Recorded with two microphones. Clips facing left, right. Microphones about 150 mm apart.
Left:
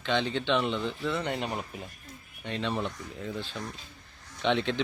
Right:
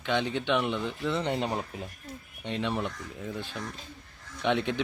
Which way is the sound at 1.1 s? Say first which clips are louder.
Right 2 dB; 25° right (ahead or behind).